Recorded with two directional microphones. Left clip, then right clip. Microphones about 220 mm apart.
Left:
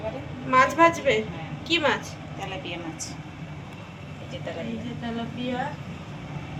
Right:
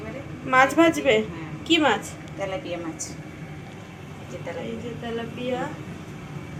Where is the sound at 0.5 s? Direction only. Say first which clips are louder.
Even; 25° right (ahead or behind).